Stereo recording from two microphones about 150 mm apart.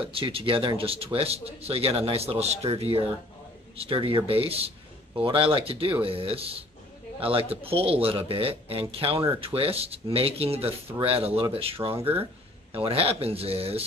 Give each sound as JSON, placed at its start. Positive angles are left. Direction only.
{"t": 0.1, "sound": "speech", "side_deg": -35}